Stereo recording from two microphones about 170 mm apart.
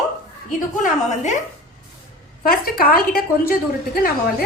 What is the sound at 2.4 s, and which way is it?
A woman's voice, 60° left (ahead or behind).